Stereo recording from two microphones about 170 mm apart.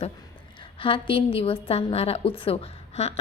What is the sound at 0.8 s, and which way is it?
A woman's voice, 30° left (ahead or behind).